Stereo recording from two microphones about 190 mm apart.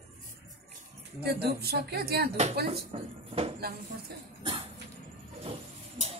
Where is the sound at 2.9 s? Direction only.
30° right (ahead or behind).